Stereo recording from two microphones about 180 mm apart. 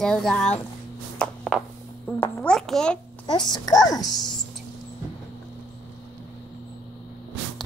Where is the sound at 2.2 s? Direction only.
5° left (ahead or behind).